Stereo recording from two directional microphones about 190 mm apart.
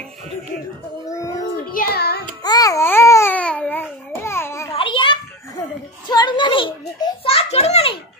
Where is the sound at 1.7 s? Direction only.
50° left (ahead or behind).